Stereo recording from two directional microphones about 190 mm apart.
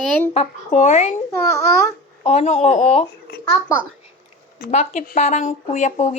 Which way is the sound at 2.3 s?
35° left (ahead or behind).